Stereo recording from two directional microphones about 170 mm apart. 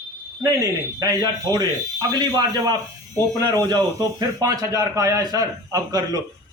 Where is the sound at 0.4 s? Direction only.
20° right (ahead or behind).